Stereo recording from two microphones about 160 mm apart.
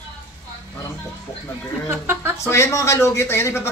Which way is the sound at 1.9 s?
15° right (ahead or behind).